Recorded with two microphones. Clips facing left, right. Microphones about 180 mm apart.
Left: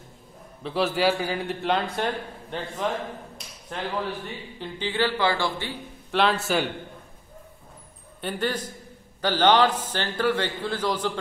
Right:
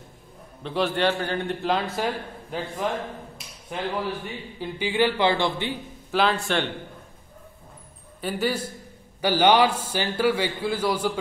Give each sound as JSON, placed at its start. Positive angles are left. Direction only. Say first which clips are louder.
{"t": 0.6, "sound": "a man's voice", "louder": "even", "side_deg": 0}
{"t": 6.1, "sound": "a man's voice", "louder": "even", "side_deg": 0}
{"t": 8.2, "sound": "a man's voice", "louder": "right 2 dB", "side_deg": -5}